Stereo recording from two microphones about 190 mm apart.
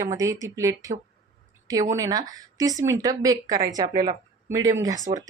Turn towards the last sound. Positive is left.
turn(degrees=-20)  # may be behind; listen again after turning